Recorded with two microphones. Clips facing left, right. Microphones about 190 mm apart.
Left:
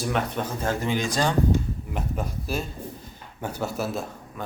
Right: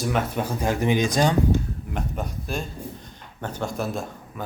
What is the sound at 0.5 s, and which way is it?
Speech, 15° right (ahead or behind).